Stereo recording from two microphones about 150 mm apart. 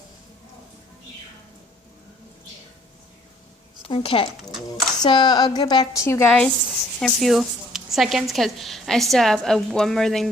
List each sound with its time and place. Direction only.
3.8 s speech: 35° left (ahead or behind)
4.4 s a woman's voice: centre (ahead or behind)
5.0 s a woman's voice: 30° left (ahead or behind)
7.0 s a woman's voice: centre (ahead or behind)